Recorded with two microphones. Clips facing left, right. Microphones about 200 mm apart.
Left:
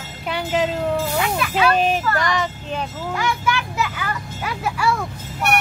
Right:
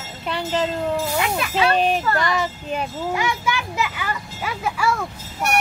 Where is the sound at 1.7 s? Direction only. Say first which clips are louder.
Even; centre (ahead or behind).